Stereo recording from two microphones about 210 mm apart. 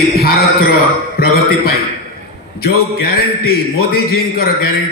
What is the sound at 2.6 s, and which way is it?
A man's voice, 45° left (ahead or behind).